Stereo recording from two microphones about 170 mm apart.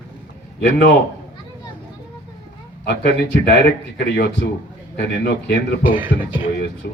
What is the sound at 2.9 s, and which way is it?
Speech, 90° left.